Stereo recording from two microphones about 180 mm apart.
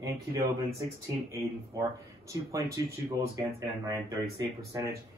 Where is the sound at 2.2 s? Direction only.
15° right (ahead or behind).